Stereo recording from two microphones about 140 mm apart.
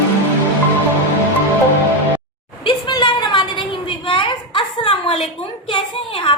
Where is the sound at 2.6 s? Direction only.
30° left (ahead or behind).